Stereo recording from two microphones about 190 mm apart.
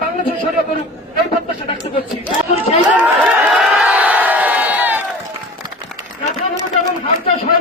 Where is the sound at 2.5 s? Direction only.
35° left (ahead or behind).